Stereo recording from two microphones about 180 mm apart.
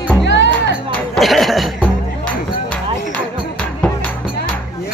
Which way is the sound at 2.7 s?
5° left (ahead or behind).